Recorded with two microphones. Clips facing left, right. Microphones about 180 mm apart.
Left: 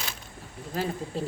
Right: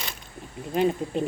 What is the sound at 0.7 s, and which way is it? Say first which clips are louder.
Speech: right 7 dB; 20° right (ahead or behind).